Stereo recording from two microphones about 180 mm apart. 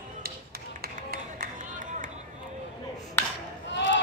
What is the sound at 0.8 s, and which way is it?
Run, 55° right (ahead or behind).